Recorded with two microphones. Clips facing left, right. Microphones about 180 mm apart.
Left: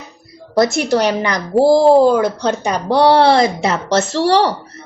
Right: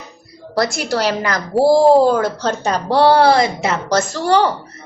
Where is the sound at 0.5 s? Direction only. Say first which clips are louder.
Left 5 dB; 20° left (ahead or behind).